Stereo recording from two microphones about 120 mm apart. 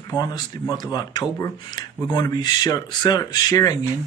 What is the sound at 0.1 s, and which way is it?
Speech, 35° left (ahead or behind).